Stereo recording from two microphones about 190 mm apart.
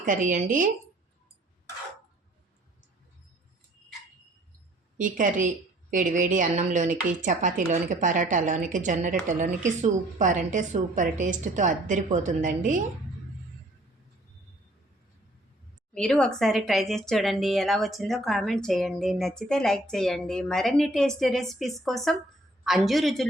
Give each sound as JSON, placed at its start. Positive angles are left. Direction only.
{"t": 0.0, "sound": "a woman's voice", "side_deg": -45}
{"t": 4.9, "sound": "a woman's voice", "side_deg": -45}
{"t": 16.0, "sound": "speech", "side_deg": 5}